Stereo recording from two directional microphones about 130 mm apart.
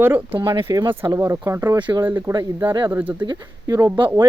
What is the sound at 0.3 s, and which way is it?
Speech, 30° right (ahead or behind).